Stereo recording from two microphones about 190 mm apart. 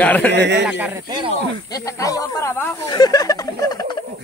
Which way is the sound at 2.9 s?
20° left (ahead or behind).